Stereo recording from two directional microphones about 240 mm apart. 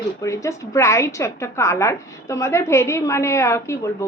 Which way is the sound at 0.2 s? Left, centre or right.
Centre.